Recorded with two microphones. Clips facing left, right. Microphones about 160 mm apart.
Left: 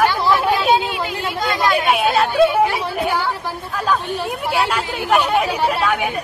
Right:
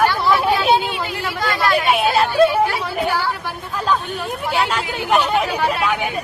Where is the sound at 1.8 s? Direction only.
Centre (ahead or behind).